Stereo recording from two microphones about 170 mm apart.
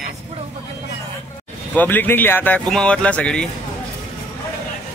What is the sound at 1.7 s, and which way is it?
Speech, 10° left (ahead or behind).